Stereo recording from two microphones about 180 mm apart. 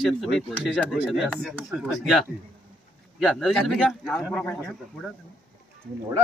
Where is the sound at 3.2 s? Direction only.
Centre (ahead or behind).